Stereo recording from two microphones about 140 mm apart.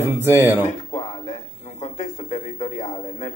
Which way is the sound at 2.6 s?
45° left (ahead or behind).